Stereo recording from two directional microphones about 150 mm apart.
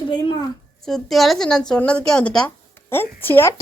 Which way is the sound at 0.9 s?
5° left (ahead or behind).